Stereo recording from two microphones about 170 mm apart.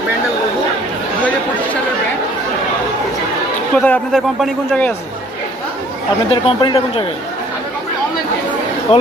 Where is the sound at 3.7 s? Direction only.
10° left (ahead or behind).